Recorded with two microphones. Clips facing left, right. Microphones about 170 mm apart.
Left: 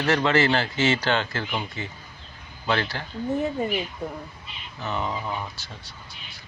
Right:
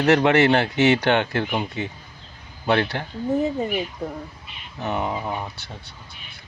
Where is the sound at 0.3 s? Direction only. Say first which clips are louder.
Right 4 dB; 65° right (ahead or behind).